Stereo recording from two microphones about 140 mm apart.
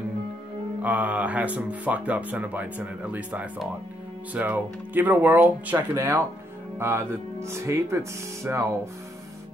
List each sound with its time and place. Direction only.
0.8 s speech: 10° right (ahead or behind)